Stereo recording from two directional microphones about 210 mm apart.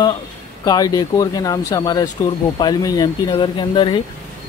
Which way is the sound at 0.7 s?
15° left (ahead or behind).